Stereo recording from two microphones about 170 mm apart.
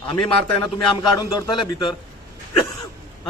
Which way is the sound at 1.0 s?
25° left (ahead or behind).